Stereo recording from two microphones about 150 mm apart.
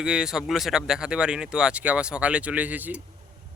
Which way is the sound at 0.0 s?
5° right (ahead or behind).